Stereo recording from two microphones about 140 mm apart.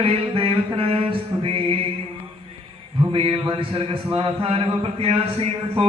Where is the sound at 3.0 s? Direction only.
40° right (ahead or behind).